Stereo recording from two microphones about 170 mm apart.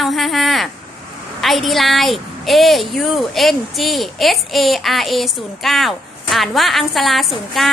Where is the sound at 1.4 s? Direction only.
Centre (ahead or behind).